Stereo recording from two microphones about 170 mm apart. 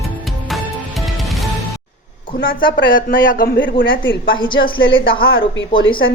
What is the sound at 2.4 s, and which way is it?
A man's voice, 55° left (ahead or behind).